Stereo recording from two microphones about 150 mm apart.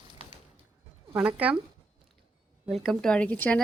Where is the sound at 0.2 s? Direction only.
35° right (ahead or behind).